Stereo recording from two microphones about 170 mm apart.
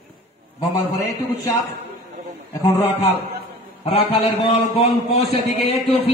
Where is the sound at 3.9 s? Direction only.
35° left (ahead or behind).